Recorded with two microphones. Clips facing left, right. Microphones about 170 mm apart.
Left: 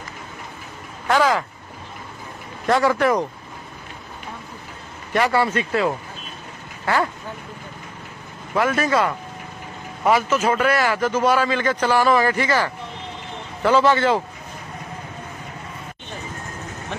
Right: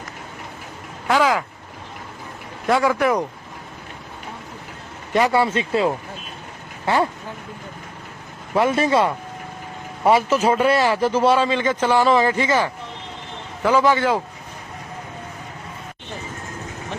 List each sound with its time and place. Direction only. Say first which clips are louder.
1.0 s speech: even; 5° right (ahead or behind)
2.6 s speech: even; 10° right (ahead or behind)
5.1 s speech: right 1 dB; 20° right (ahead or behind)
8.5 s a man's voice: right 2 dB; 25° right (ahead or behind); by 14.2 s 10° right (ahead or behind)